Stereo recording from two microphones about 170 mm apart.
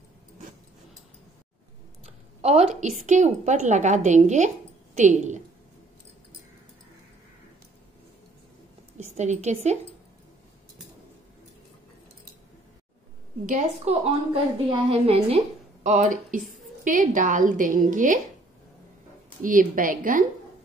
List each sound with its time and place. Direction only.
2.0 s a woman's voice: 40° right (ahead or behind)
8.9 s a woman's voice: 45° right (ahead or behind)
13.5 s a woman's voice: 35° right (ahead or behind)
19.4 s a woman's voice: 50° right (ahead or behind)